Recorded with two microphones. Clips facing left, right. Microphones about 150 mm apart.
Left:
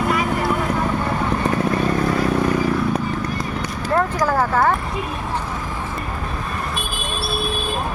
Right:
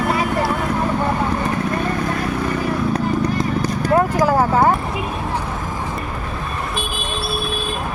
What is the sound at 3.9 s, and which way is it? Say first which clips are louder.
Clip-clop: right 3 dB; 15° right (ahead or behind).